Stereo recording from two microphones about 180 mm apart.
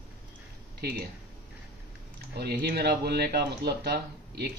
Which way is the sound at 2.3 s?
60° right (ahead or behind).